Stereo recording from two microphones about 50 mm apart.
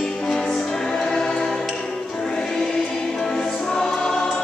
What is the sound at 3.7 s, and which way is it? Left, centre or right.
Choir, centre.